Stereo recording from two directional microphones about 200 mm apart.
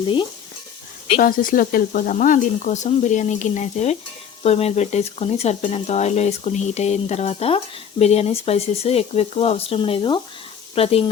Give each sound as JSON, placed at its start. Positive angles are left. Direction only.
{"t": 1.2, "sound": "speech", "side_deg": 45}